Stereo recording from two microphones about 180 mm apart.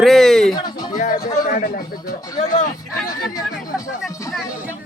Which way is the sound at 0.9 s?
50° left (ahead or behind).